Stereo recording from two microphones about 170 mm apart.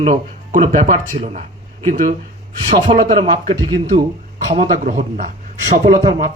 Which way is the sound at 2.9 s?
40° right (ahead or behind).